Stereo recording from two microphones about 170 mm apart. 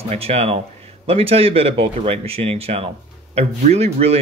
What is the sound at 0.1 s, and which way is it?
Speech, 35° right (ahead or behind).